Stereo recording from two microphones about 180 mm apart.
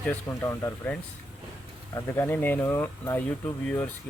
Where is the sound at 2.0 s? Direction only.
15° left (ahead or behind).